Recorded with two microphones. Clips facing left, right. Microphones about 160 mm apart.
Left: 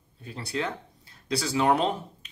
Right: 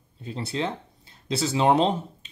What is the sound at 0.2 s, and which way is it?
Speech, 25° right (ahead or behind).